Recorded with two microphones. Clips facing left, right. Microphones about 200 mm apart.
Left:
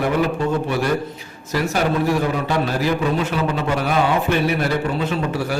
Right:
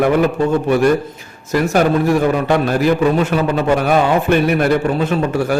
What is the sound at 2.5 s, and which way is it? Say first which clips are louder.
A man's voice: right 6 dB; 55° right (ahead or behind).